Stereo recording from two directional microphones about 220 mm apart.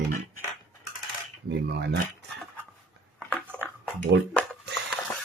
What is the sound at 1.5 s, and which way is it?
Speech, 50° right (ahead or behind).